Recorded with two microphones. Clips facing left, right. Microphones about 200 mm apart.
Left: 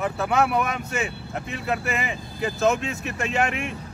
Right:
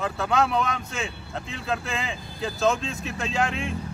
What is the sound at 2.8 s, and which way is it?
Speech, 65° left (ahead or behind).